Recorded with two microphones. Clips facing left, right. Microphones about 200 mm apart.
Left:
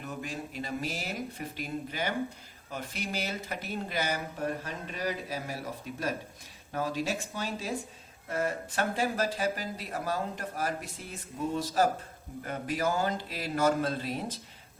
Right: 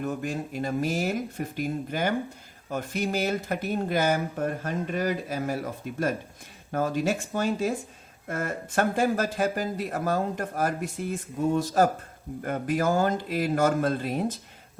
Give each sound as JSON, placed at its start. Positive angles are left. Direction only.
{"t": 0.0, "sound": "speech", "side_deg": -50}
{"t": 6.7, "sound": "speech", "side_deg": -50}